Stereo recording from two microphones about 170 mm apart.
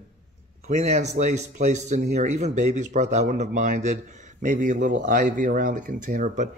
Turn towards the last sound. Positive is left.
turn(degrees=-50)  # may be behind; listen again after turning